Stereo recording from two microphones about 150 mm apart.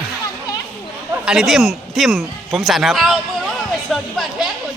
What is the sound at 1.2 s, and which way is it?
Speech, centre (ahead or behind).